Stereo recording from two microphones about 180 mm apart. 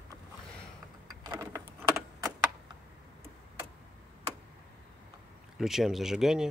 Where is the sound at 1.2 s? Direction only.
20° right (ahead or behind).